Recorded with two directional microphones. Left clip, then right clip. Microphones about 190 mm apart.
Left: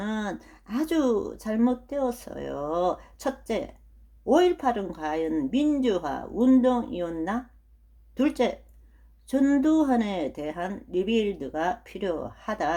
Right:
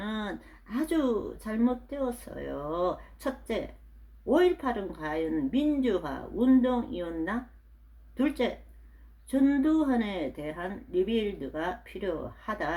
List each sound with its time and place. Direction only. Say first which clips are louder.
0.0 s speech: left 4 dB; 40° left (ahead or behind)